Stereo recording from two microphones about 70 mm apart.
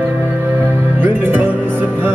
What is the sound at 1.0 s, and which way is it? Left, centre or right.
Music, right.